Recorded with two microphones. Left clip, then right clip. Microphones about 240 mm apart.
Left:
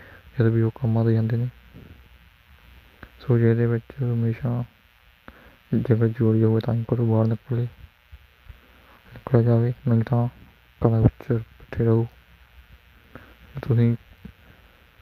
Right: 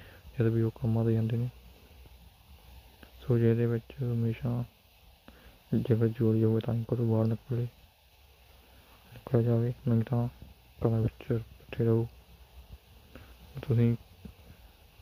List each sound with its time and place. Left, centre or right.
0.3 s speech: left
3.0 s speech: left
5.7 s speech: left
9.2 s speech: left
13.1 s a sound: left